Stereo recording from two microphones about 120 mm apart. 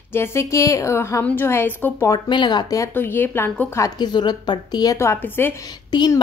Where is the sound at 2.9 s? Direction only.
15° left (ahead or behind); by 5.0 s 35° left (ahead or behind).